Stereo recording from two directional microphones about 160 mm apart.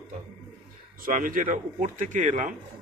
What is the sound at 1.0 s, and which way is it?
Speech, 60° right (ahead or behind).